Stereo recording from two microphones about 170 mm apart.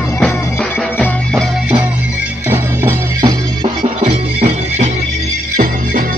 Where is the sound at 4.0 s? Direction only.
40° right (ahead or behind).